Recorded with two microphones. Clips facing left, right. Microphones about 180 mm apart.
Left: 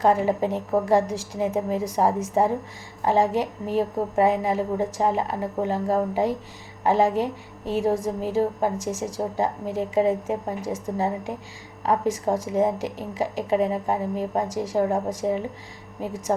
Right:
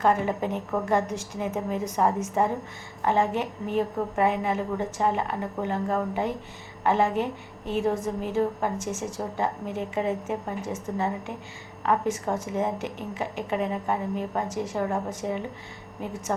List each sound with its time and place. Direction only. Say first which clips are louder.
0.0 s a woman's voice: left 3 dB; 30° left (ahead or behind)